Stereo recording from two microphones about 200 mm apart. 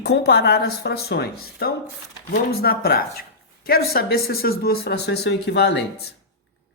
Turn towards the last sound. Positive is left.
turn(degrees=60)  # may be behind; listen again after turning